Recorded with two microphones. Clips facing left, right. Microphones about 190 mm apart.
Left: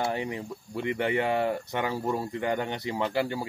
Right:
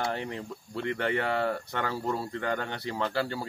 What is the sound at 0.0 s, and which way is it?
Speech, 15° left (ahead or behind).